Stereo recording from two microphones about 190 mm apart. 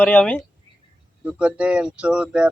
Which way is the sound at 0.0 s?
5° left (ahead or behind).